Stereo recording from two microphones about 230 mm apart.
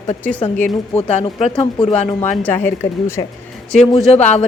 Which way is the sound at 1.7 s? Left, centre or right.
Left.